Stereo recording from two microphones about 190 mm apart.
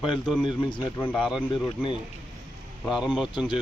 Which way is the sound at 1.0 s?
10° left (ahead or behind).